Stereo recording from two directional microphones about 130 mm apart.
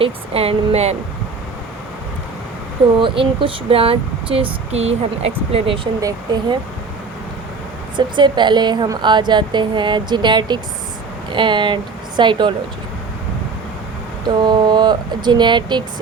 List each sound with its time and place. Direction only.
0.0 s speech: 50° right (ahead or behind)
3.0 s speech: 40° right (ahead or behind)
6.0 s a woman's voice: 30° right (ahead or behind)
7.9 s a woman's voice: 35° right (ahead or behind)
14.3 s speech: 35° right (ahead or behind)